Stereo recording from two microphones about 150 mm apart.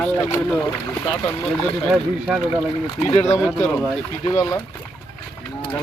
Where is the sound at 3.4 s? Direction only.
10° left (ahead or behind).